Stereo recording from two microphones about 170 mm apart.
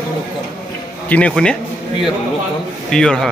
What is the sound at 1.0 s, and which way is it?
A man's voice, 10° left (ahead or behind).